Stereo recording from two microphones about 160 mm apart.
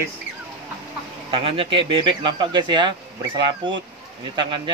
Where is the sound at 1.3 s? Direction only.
35° right (ahead or behind).